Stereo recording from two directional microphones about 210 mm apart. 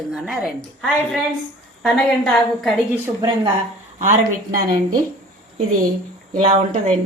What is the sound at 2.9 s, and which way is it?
Speech, 15° right (ahead or behind).